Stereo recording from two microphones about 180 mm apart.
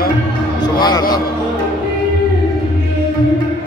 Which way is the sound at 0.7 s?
25° left (ahead or behind).